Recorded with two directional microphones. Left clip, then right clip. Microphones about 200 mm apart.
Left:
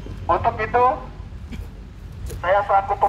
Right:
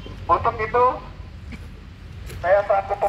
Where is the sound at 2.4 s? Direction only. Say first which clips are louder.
Left 1 dB; centre (ahead or behind).